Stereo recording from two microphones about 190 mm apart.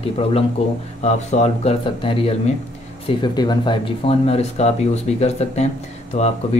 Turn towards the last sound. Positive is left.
turn(degrees=40)  # may be behind; listen again after turning